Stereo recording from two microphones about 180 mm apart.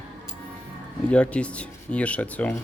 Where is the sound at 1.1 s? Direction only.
5° left (ahead or behind).